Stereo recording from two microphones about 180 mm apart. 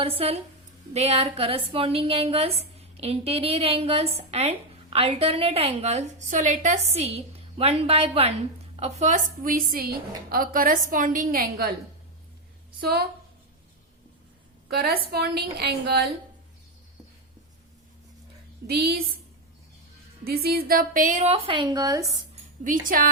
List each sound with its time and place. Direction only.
0.0 s a woman's voice: 35° right (ahead or behind); by 11.7 s 55° right (ahead or behind)
12.8 s a woman's voice: 60° right (ahead or behind)
14.7 s a woman's voice: 60° right (ahead or behind)
18.7 s a woman's voice: 60° right (ahead or behind)
20.2 s a woman's voice: 60° right (ahead or behind); by 22.2 s 20° right (ahead or behind)
22.6 s a woman's voice: 50° right (ahead or behind)